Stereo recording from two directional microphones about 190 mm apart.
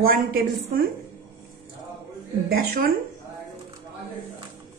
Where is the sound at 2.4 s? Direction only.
50° right (ahead or behind).